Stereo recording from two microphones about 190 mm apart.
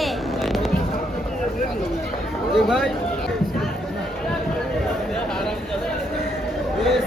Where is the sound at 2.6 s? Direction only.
Centre (ahead or behind).